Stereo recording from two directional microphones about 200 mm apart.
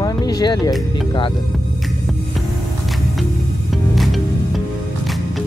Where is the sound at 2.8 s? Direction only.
Centre (ahead or behind).